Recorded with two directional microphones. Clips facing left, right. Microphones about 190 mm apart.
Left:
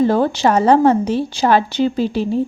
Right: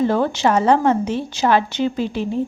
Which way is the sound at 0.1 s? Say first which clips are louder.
Left 2 dB; 35° left (ahead or behind).